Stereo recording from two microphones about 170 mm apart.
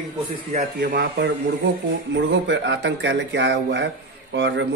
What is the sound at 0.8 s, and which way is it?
Speech, 65° right (ahead or behind).